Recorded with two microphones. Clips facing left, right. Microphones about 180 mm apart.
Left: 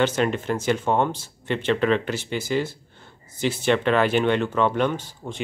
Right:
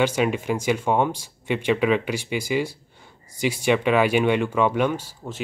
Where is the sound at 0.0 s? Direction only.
10° right (ahead or behind).